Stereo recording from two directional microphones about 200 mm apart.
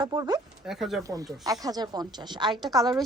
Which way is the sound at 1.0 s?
15° right (ahead or behind).